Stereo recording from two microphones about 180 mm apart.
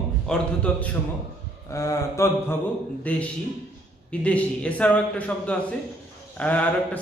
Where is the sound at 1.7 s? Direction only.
15° left (ahead or behind).